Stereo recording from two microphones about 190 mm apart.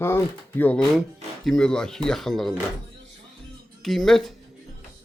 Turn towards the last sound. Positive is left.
turn(degrees=0)  # may be behind; listen again after turning